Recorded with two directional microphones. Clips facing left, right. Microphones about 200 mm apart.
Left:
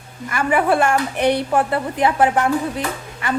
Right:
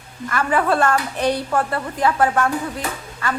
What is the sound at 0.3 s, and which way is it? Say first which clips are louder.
Speech: left 2 dB; 10° left (ahead or behind).